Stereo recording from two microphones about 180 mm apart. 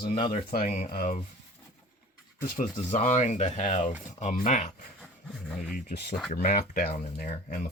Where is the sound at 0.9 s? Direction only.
55° left (ahead or behind).